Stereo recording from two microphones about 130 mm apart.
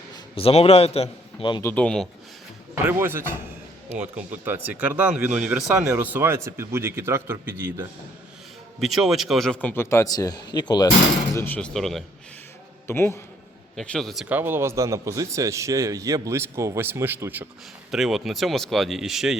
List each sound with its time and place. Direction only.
0.3 s a man's voice: 45° left (ahead or behind)
1.7 s speech: 5° left (ahead or behind)
2.8 s speech: 20° right (ahead or behind)
8.8 s speech: centre (ahead or behind); by 10.8 s 35° left (ahead or behind)
11.3 s speech: 15° left (ahead or behind)
11.7 s speech: centre (ahead or behind)
12.9 s speech: 20° left (ahead or behind)
13.7 s speech: 5° left (ahead or behind)
14.3 s speech: 15° right (ahead or behind)
17.9 s speech: 5° right (ahead or behind)